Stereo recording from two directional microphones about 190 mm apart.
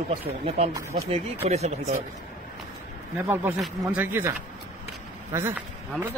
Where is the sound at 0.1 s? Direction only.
35° right (ahead or behind).